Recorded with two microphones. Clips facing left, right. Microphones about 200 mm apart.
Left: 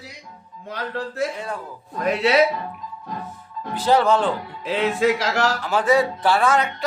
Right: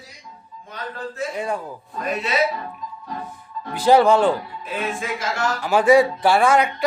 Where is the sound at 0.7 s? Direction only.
70° left (ahead or behind).